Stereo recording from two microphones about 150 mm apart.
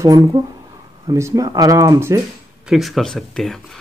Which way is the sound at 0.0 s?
25° right (ahead or behind).